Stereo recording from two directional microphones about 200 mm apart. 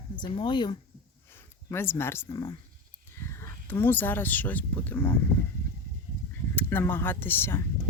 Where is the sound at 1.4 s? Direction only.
10° left (ahead or behind).